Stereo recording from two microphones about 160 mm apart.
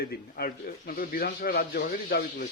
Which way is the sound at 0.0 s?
75° left (ahead or behind).